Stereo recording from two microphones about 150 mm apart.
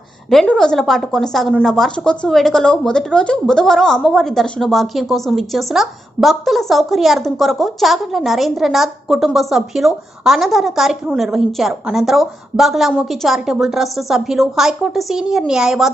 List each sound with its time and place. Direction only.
0.3 s speech: 5° left (ahead or behind)